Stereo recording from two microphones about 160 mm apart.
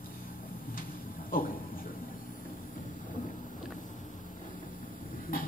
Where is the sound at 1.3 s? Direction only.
60° left (ahead or behind).